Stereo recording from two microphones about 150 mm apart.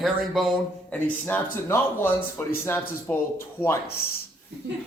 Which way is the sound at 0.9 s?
10° left (ahead or behind).